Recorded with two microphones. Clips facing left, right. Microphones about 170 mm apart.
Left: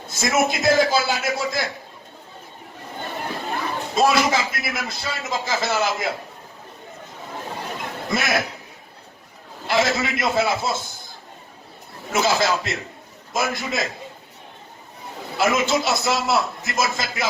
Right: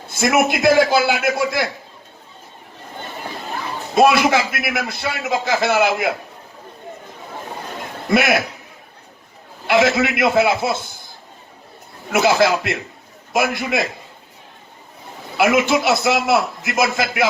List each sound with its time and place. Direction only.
0.1 s a man's voice: 60° right (ahead or behind)
3.9 s a man's voice: 60° right (ahead or behind)
8.1 s a man's voice: 60° right (ahead or behind)
9.6 s a man's voice: 60° right (ahead or behind)
12.1 s a man's voice: 60° right (ahead or behind)
15.4 s a man's voice: 55° right (ahead or behind)